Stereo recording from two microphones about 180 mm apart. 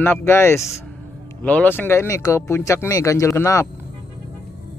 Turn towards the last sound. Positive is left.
turn(degrees=15)  # may be behind; listen again after turning